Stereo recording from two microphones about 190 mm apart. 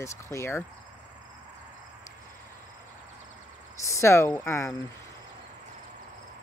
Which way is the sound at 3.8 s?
15° left (ahead or behind).